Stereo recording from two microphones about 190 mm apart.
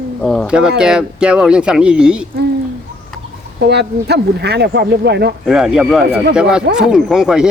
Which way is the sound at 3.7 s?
60° right (ahead or behind).